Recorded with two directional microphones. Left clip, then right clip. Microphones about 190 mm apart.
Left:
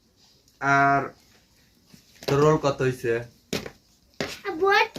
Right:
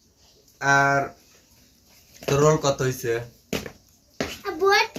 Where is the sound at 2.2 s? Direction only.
Centre (ahead or behind).